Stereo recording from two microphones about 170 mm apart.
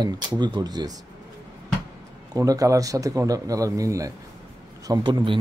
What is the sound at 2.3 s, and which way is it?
A man's voice, 20° right (ahead or behind).